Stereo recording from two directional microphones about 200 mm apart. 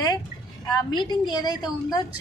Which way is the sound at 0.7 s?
20° left (ahead or behind).